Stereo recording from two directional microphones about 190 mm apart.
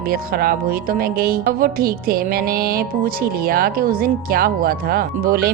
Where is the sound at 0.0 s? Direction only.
50° right (ahead or behind).